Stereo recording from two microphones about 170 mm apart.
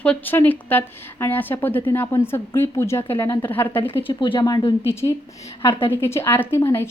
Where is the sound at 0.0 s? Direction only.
10° left (ahead or behind).